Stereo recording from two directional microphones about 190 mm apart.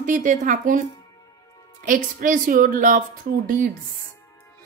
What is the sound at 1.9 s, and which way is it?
A woman's voice, 45° right (ahead or behind).